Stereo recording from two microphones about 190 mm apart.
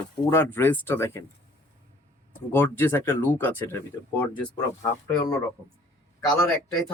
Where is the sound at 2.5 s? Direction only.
10° left (ahead or behind).